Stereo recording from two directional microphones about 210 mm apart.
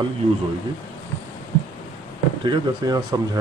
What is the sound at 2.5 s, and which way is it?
Speech, 20° right (ahead or behind).